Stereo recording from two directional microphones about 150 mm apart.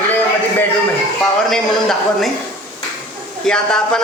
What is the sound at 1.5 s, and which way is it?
Speech, centre (ahead or behind).